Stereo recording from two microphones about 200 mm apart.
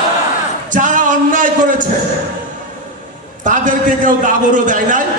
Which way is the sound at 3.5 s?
40° right (ahead or behind).